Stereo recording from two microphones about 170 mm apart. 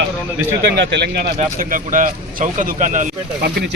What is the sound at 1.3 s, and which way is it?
Speech, 50° right (ahead or behind).